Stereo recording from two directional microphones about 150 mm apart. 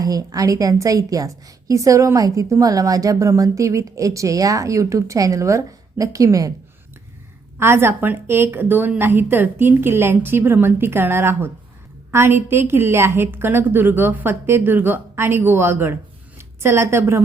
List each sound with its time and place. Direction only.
0.0 s a woman's voice: 25° right (ahead or behind)
7.6 s a woman's voice: 15° right (ahead or behind)